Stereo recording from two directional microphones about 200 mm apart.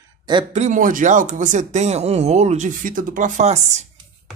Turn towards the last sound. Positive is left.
turn(degrees=-35)  # may be behind; listen again after turning